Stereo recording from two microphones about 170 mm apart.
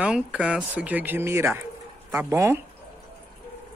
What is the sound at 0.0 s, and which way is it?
Speech, 5° right (ahead or behind).